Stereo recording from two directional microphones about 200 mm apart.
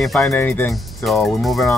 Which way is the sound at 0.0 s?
Centre (ahead or behind).